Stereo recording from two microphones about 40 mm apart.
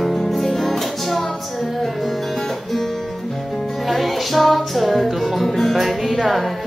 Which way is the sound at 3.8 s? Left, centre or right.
Centre.